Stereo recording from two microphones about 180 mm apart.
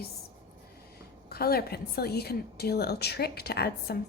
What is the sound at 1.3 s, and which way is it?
A woman's voice, 60° left (ahead or behind).